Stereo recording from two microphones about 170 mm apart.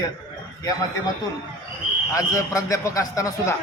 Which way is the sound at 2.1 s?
20° left (ahead or behind).